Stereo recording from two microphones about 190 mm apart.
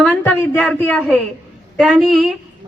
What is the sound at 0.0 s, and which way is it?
A woman's voice, 5° left (ahead or behind).